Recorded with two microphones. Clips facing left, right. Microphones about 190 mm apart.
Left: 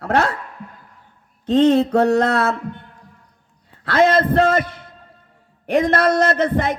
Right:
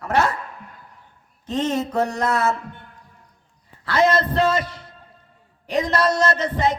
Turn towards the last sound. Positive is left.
turn(degrees=55)  # may be behind; listen again after turning